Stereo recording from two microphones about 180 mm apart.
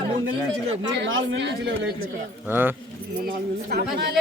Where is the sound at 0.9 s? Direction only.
90° right; by 1.7 s 70° right (ahead or behind).